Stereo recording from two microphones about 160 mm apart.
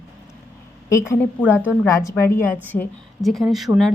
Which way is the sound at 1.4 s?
10° right (ahead or behind).